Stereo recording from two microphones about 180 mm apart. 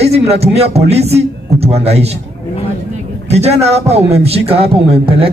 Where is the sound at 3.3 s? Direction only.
35° right (ahead or behind).